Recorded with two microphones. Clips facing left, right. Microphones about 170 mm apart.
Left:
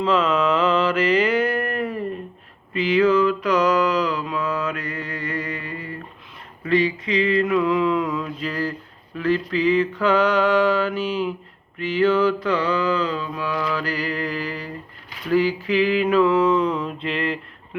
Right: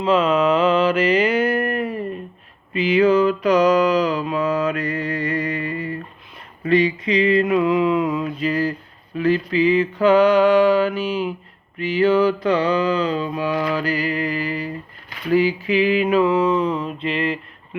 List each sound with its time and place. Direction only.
0.0 s mantra: 15° right (ahead or behind)
5.3 s music: 20° right (ahead or behind)
6.7 s mantra: 15° right (ahead or behind)